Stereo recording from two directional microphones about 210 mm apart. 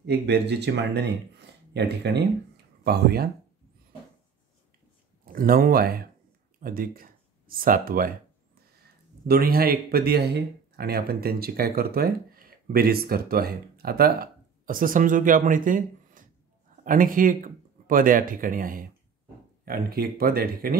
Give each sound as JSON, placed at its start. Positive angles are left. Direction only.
{"t": 0.0, "sound": "speech", "side_deg": -50}
{"t": 5.2, "sound": "speech", "side_deg": -45}
{"t": 9.2, "sound": "speech", "side_deg": -45}